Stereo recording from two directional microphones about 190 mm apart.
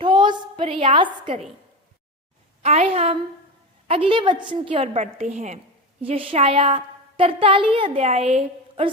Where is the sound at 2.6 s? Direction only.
35° right (ahead or behind).